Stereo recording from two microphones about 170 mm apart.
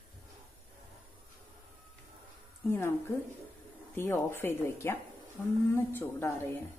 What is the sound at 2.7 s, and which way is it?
Speech, 15° left (ahead or behind).